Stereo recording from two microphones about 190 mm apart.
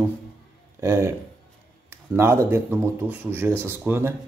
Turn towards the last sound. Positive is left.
turn(degrees=-10)  # may be behind; listen again after turning